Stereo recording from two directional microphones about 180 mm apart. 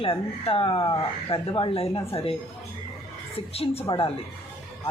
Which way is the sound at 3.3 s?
35° left (ahead or behind).